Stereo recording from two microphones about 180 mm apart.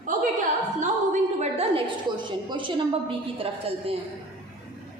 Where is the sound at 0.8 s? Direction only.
40° right (ahead or behind).